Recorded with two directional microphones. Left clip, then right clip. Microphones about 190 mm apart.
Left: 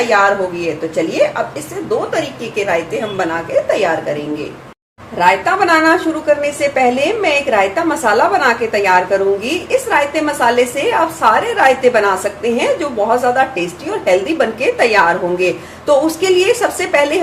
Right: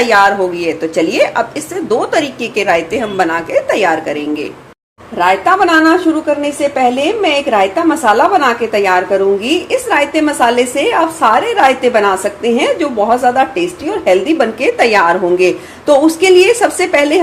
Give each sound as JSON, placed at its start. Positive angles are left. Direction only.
{"t": 0.1, "sound": "a woman's voice", "side_deg": -45}
{"t": 3.2, "sound": "a woman's voice", "side_deg": -45}
{"t": 5.1, "sound": "a woman's voice", "side_deg": -35}